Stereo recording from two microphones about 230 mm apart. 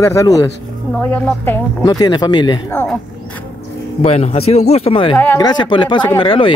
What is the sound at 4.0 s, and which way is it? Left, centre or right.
Speech, left.